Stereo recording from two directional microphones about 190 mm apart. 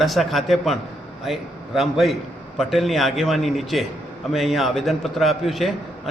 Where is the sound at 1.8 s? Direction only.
Centre (ahead or behind).